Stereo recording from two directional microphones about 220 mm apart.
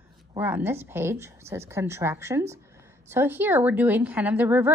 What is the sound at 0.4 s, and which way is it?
A woman's voice, 10° right (ahead or behind).